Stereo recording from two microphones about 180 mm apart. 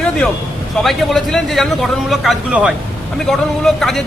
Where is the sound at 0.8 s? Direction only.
Centre (ahead or behind).